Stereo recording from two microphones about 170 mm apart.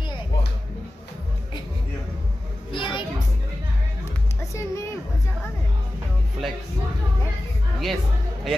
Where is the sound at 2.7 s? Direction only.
30° left (ahead or behind).